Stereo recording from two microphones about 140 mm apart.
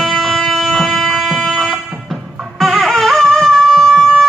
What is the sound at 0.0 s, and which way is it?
Music, centre (ahead or behind).